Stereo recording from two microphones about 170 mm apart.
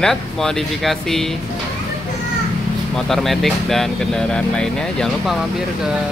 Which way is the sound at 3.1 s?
Centre (ahead or behind).